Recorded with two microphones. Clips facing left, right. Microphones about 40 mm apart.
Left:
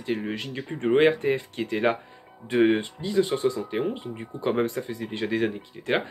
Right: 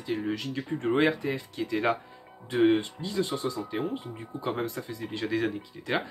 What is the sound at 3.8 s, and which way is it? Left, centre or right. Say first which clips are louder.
Speech: left 4 dB; left.